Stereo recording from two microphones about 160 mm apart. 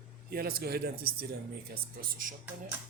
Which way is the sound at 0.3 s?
70° right (ahead or behind).